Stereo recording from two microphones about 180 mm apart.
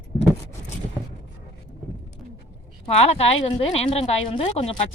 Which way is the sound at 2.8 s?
35° left (ahead or behind).